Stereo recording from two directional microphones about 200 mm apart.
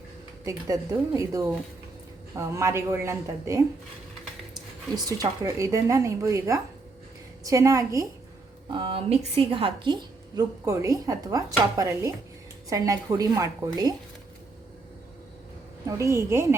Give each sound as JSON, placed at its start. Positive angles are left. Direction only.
{"t": 0.4, "sound": "speech", "side_deg": -15}
{"t": 5.0, "sound": "speech", "side_deg": -15}
{"t": 8.7, "sound": "a woman's voice", "side_deg": -25}
{"t": 15.9, "sound": "speech", "side_deg": -15}